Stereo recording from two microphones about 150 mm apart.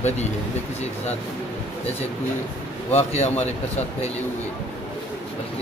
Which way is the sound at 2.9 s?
45° left (ahead or behind).